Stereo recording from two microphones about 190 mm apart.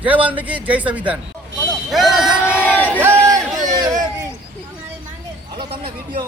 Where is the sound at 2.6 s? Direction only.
10° left (ahead or behind).